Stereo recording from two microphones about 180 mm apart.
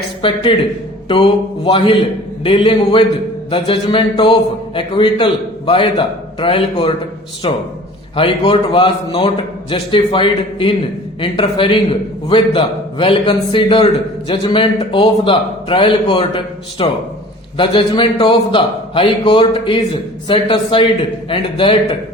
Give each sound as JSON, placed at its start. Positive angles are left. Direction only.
{"t": 0.2, "sound": "a man's voice", "side_deg": 30}